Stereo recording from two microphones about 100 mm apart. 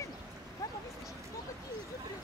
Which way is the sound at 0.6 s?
35° left (ahead or behind).